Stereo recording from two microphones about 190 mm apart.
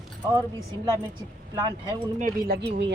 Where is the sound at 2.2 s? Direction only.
55° right (ahead or behind).